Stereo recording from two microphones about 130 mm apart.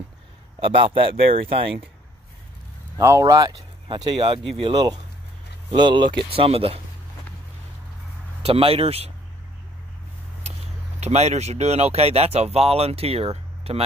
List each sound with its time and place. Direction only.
0.6 s speech: 45° right (ahead or behind)
3.0 s speech: 25° right (ahead or behind)
3.8 s speech: 40° right (ahead or behind)
8.5 s speech: 45° right (ahead or behind)
11.0 s speech: 60° right (ahead or behind)